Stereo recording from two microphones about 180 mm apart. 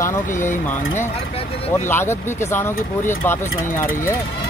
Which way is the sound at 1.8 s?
15° left (ahead or behind).